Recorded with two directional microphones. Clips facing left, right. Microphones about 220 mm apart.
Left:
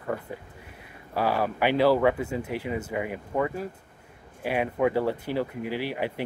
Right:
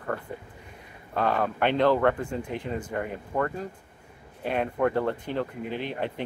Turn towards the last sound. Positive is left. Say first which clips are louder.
# left 1 dB
turn(degrees=10)  # may be behind; listen again after turning